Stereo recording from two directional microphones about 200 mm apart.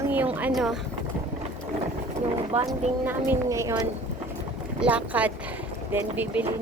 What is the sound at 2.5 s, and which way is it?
Speech, 30° right (ahead or behind).